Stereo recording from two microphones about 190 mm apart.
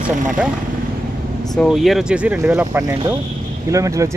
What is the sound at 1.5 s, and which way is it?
Speech, centre (ahead or behind).